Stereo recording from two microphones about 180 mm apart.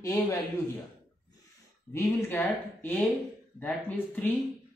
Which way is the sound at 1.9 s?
10° left (ahead or behind).